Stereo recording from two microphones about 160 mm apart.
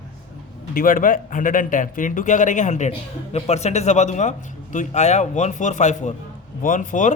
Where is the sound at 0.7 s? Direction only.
60° left (ahead or behind).